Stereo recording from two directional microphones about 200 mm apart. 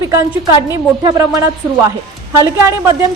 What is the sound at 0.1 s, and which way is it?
A woman's voice, 15° right (ahead or behind).